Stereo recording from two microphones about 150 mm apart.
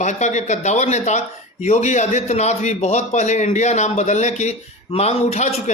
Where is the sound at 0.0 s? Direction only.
50° left (ahead or behind).